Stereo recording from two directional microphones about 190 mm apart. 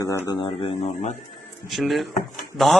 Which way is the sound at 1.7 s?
Centre (ahead or behind).